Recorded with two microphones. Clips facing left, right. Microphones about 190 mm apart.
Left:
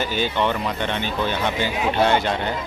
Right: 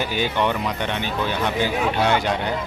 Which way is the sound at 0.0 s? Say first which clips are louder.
Even; 15° right (ahead or behind).